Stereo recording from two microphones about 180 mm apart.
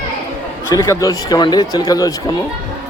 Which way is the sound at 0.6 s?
20° left (ahead or behind).